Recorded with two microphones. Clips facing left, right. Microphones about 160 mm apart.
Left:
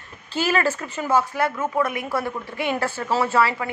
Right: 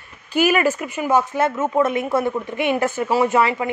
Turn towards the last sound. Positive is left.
turn(degrees=-20)  # may be behind; listen again after turning